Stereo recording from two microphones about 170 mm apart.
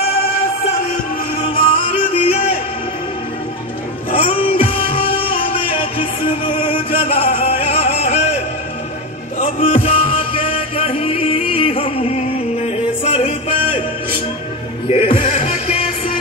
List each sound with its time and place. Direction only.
1.5 s music: 30° left (ahead or behind)
4.1 s music: 35° left (ahead or behind)
9.6 s music: 35° left (ahead or behind)
14.9 s music: 30° left (ahead or behind)